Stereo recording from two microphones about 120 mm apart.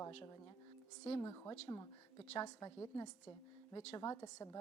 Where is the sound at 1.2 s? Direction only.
25° left (ahead or behind).